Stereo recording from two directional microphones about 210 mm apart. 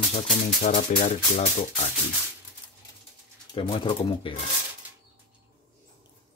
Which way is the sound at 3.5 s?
25° left (ahead or behind).